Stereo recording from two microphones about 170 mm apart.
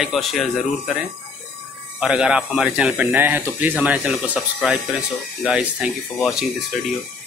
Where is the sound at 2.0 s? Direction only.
5° right (ahead or behind).